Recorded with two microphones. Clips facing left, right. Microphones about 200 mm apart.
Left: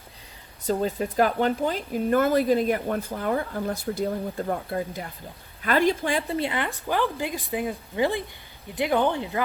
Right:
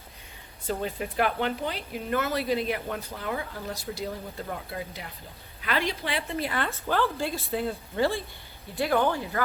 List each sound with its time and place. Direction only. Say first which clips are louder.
0.6 s speech: left 6 dB; 40° left (ahead or behind)
6.3 s speech: left 4 dB; 25° left (ahead or behind)
6.6 s speech: left 1 dB; 15° left (ahead or behind)